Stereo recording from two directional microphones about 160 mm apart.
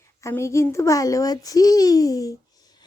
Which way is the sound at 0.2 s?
20° left (ahead or behind).